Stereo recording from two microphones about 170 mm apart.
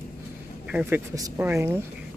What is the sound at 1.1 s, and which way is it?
Speech, 20° right (ahead or behind).